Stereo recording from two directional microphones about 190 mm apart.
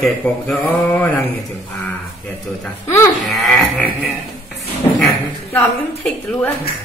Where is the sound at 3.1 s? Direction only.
Centre (ahead or behind).